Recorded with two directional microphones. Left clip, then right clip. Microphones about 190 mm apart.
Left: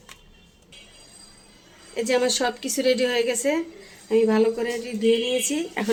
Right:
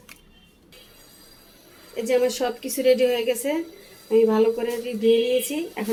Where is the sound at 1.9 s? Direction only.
20° left (ahead or behind).